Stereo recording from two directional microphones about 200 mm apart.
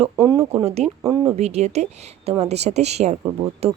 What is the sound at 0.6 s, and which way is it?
Speech, 30° right (ahead or behind).